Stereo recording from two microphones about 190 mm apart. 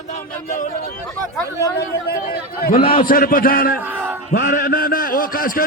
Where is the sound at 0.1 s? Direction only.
45° left (ahead or behind).